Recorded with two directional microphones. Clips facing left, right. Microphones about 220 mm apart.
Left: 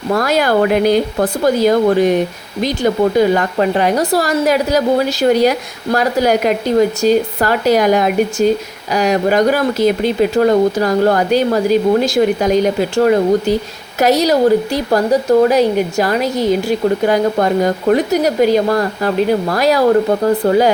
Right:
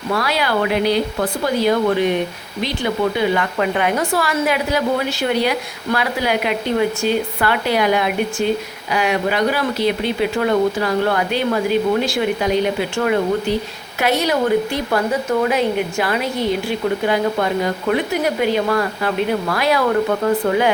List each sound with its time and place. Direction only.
0.1 s a woman's voice: 45° left (ahead or behind)